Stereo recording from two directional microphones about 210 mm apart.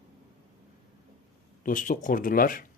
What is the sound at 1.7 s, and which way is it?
Speech, 40° left (ahead or behind).